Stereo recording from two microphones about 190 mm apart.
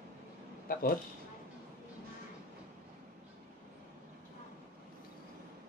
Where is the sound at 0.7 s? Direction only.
50° left (ahead or behind).